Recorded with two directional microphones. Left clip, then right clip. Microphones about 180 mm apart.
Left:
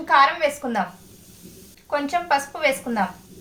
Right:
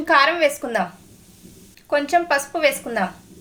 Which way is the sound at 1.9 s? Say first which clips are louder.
Right 3 dB; 60° right (ahead or behind).